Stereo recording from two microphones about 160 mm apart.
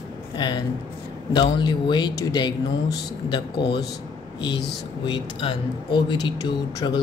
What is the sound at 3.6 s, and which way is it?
Speech, 90° left.